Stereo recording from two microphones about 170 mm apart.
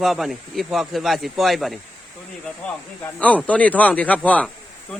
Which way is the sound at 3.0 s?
10° left (ahead or behind).